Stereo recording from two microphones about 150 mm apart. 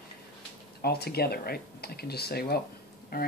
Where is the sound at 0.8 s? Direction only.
90° left.